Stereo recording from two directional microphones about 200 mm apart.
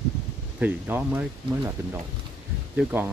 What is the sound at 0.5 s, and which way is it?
Speech, 10° right (ahead or behind).